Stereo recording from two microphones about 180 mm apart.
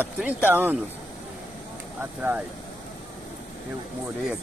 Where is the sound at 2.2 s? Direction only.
10° right (ahead or behind).